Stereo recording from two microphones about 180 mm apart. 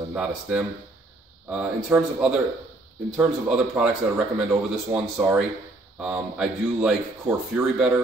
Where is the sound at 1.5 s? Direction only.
5° right (ahead or behind).